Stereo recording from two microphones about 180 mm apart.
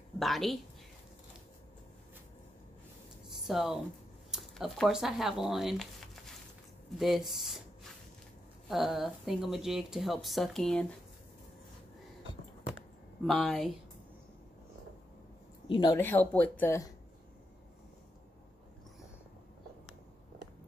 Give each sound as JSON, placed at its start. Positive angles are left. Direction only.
{"t": 0.2, "sound": "speech", "side_deg": 0}
{"t": 3.3, "sound": "speech", "side_deg": 0}
{"t": 8.6, "sound": "speech", "side_deg": 0}
{"t": 13.2, "sound": "speech", "side_deg": 0}
{"t": 15.7, "sound": "a woman's voice", "side_deg": 25}
{"t": 16.0, "sound": "speech", "side_deg": 10}